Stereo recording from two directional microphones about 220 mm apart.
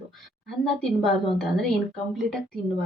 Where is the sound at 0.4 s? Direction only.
Centre (ahead or behind).